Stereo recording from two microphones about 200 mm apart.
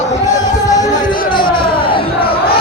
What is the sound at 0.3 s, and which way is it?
Music, 20° left (ahead or behind).